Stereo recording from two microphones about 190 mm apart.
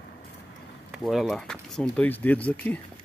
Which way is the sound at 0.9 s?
Centre (ahead or behind).